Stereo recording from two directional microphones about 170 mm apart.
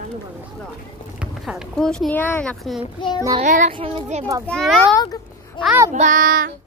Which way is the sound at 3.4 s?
45° right (ahead or behind).